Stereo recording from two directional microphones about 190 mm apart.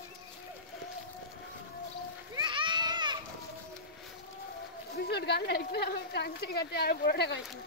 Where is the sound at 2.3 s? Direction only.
25° right (ahead or behind).